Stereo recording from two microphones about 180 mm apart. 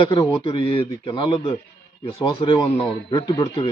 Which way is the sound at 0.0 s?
25° left (ahead or behind).